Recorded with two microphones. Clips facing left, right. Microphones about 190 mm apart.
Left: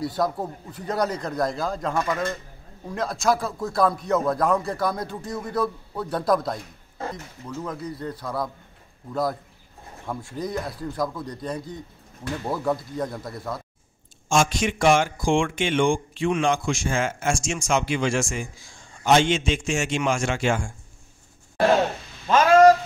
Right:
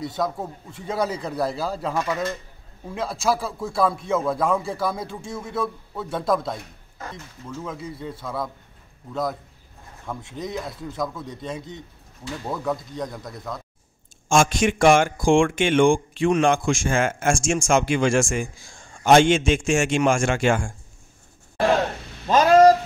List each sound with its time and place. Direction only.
0.2 s speech: centre (ahead or behind)
7.0 s a sound: 30° left (ahead or behind)
7.4 s speech: 5° right (ahead or behind)
14.3 s speech: 50° right (ahead or behind)
22.2 s speech: 35° right (ahead or behind)